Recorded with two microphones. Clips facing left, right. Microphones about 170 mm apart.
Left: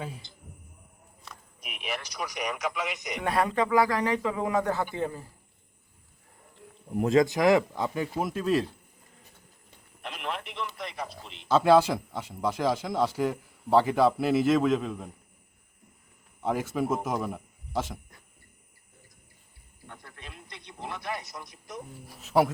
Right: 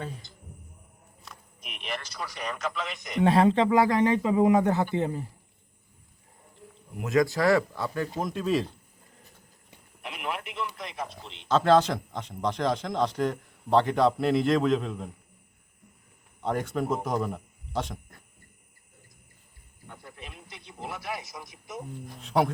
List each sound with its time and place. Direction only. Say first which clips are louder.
1.2 s speech: left 1 dB; 5° left (ahead or behind)
3.2 s speech: right 5 dB; 25° right (ahead or behind)
7.0 s speech: left 2 dB; 25° left (ahead or behind)
8.2 s speech: left 1 dB; centre (ahead or behind)
9.6 s a sound: even; 5° right (ahead or behind)
10.8 s speech: even; centre (ahead or behind)
16.4 s a man's voice: even; 5° left (ahead or behind)
19.9 s speech: right 2 dB; 5° right (ahead or behind)